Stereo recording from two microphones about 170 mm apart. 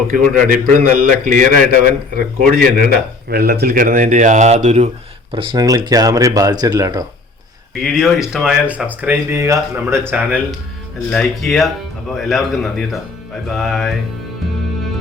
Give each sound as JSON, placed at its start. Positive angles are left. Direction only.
{"t": 0.1, "sound": "a man's voice", "side_deg": -55}
{"t": 3.2, "sound": "a man's voice", "side_deg": -65}
{"t": 5.3, "sound": "speech", "side_deg": -30}
{"t": 7.8, "sound": "speech", "side_deg": 0}
{"t": 11.1, "sound": "a man's voice", "side_deg": 5}